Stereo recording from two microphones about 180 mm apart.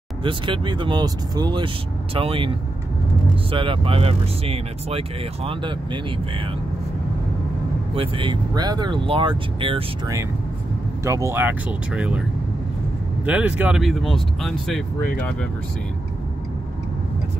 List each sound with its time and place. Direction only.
0.2 s speech: 30° right (ahead or behind)
3.5 s speech: 30° right (ahead or behind)
7.9 s speech: 30° right (ahead or behind)
11.1 s speech: 15° right (ahead or behind)
13.2 s speech: 10° right (ahead or behind)